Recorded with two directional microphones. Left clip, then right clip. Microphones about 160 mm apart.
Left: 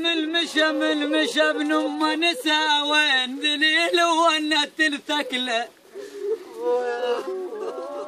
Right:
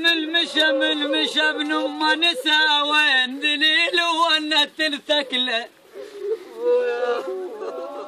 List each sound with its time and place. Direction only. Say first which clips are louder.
0.0 s speech: right 3 dB; 5° left (ahead or behind)
6.6 s speech: right 4 dB; 30° left (ahead or behind)